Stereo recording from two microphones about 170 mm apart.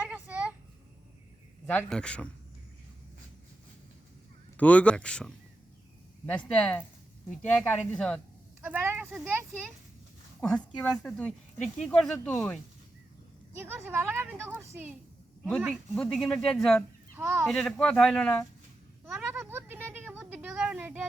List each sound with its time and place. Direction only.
0.0 s a sound: 5° right (ahead or behind)
1.6 s speech: 10° left (ahead or behind)
4.5 s speech: 10° left (ahead or behind)
8.6 s speech: 10° right (ahead or behind)
10.4 s speech: 5° left (ahead or behind)
13.7 s speech: 15° right (ahead or behind)
15.7 s speech: 5° left (ahead or behind)
17.2 s speech: 15° right (ahead or behind)
17.4 s speech: centre (ahead or behind)
19.3 s a sound: 10° right (ahead or behind)